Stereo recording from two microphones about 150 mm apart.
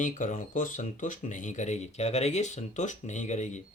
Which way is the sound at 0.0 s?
55° left (ahead or behind).